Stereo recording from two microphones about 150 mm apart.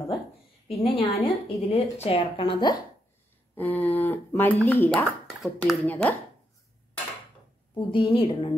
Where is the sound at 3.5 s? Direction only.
10° left (ahead or behind).